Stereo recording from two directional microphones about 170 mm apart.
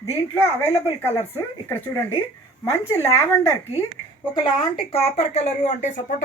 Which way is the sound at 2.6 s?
15° left (ahead or behind).